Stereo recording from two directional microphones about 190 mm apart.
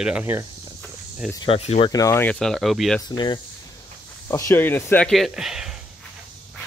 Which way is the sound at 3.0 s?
20° left (ahead or behind).